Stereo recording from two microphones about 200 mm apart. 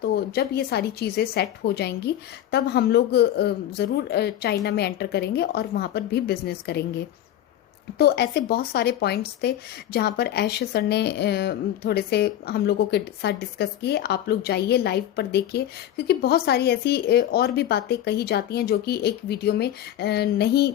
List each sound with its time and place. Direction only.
0.0 s speech: 50° left (ahead or behind)
7.9 s a woman's voice: 55° left (ahead or behind)